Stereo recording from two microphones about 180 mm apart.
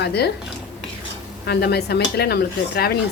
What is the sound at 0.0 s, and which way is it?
Speech, 65° left (ahead or behind).